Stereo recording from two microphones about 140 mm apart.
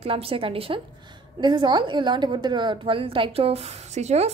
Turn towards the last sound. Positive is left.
turn(degrees=-50)  # may be behind; listen again after turning